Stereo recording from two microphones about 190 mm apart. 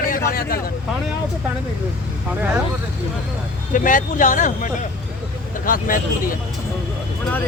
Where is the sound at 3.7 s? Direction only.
45° left (ahead or behind).